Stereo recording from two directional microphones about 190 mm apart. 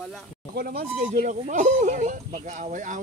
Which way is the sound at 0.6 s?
50° right (ahead or behind).